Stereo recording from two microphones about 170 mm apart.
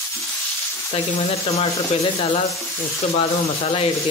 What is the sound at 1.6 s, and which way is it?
Speech, 35° left (ahead or behind).